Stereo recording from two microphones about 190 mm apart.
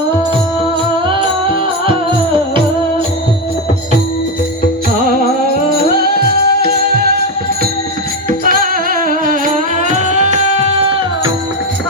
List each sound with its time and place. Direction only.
6.0 s music: 55° right (ahead or behind)
8.3 s music: 50° right (ahead or behind)